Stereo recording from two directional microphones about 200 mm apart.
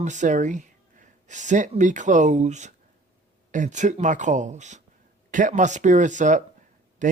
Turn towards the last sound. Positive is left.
turn(degrees=-40)  # may be behind; listen again after turning